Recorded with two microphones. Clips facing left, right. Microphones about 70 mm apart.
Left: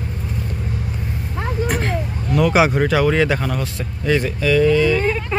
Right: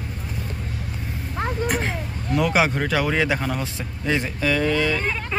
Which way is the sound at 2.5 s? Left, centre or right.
Centre.